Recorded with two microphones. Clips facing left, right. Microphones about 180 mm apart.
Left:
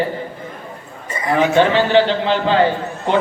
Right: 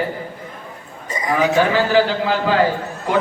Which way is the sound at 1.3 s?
25° left (ahead or behind).